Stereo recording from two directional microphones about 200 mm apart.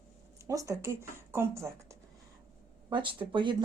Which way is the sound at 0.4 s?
15° right (ahead or behind).